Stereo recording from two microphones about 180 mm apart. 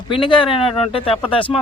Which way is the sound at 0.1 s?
30° left (ahead or behind).